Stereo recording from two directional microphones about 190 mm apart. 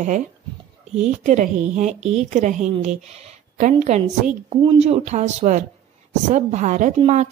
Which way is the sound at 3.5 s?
40° right (ahead or behind).